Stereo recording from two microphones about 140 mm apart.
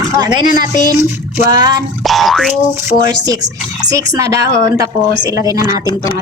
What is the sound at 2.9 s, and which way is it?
Speech, 30° right (ahead or behind).